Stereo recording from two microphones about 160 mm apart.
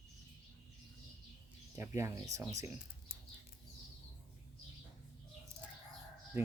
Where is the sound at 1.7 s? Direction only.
15° right (ahead or behind).